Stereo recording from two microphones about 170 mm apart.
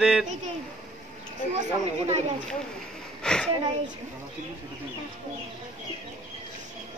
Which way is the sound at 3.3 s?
5° left (ahead or behind).